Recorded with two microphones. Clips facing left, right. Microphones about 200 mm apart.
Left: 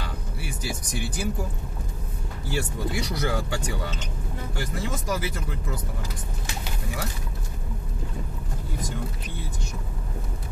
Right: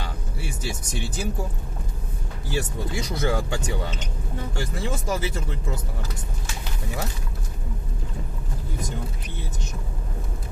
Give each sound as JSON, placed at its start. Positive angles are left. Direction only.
{"t": 0.4, "sound": "speech", "side_deg": -25}
{"t": 2.5, "sound": "speech", "side_deg": -20}